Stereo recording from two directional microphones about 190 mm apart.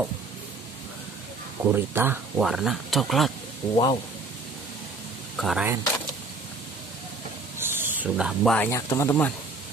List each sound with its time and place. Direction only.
1.6 s speech: 10° right (ahead or behind)
3.7 s speech: 25° left (ahead or behind)
5.4 s speech: centre (ahead or behind)
7.5 s a sound: 10° right (ahead or behind)
8.5 s speech: 15° left (ahead or behind)